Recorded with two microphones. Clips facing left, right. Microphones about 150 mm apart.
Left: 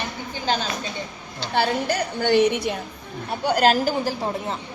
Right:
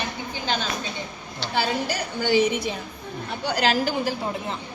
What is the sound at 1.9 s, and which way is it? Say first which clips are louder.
A woman's voice: left 2 dB; 60° left (ahead or behind).